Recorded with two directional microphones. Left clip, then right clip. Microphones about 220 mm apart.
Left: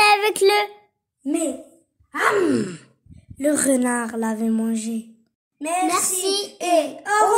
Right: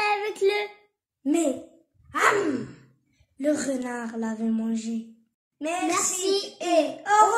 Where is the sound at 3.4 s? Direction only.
35° left (ahead or behind).